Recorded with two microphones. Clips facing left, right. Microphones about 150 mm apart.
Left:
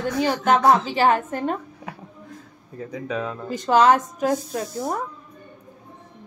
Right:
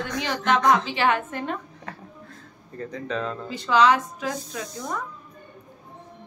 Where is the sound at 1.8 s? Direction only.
10° left (ahead or behind).